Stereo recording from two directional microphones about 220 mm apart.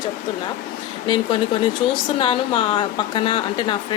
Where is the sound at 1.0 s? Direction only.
20° left (ahead or behind).